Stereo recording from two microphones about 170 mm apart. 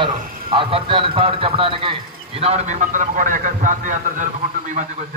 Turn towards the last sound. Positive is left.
turn(degrees=-50)  # may be behind; listen again after turning